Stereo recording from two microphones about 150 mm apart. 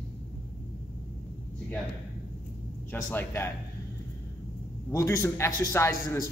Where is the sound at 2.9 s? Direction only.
15° left (ahead or behind).